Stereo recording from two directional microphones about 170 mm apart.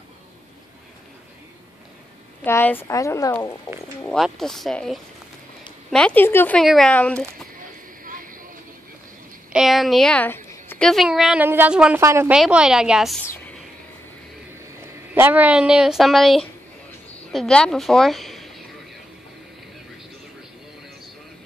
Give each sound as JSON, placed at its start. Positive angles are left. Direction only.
{"t": 2.4, "sound": "a woman's voice", "side_deg": 10}
{"t": 4.1, "sound": "a woman's voice", "side_deg": 0}
{"t": 6.6, "sound": "a woman's voice", "side_deg": 0}
{"t": 8.0, "sound": "vehicle", "side_deg": -55}
{"t": 9.5, "sound": "a woman's voice", "side_deg": 0}
{"t": 10.9, "sound": "a woman's voice", "side_deg": 0}
{"t": 12.3, "sound": "a woman's voice", "side_deg": -5}
{"t": 15.1, "sound": "a woman's voice", "side_deg": -10}